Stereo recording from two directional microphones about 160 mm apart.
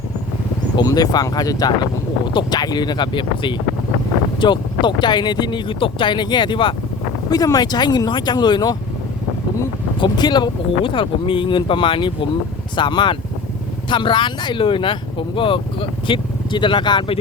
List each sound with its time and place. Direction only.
0.8 s speech: 25° left (ahead or behind)
10.0 s speech: 25° left (ahead or behind)